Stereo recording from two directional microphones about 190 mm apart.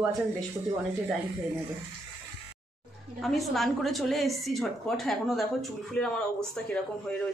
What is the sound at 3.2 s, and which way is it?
A woman's voice, centre (ahead or behind).